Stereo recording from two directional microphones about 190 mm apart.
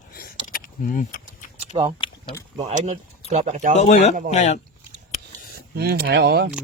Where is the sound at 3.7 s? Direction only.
35° left (ahead or behind).